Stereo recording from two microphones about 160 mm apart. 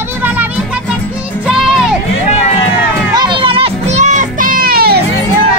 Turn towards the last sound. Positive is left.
turn(degrees=-70)  # may be behind; listen again after turning